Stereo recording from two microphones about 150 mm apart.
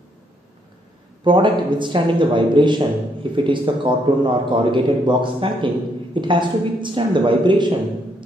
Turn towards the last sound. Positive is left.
turn(degrees=-30)  # may be behind; listen again after turning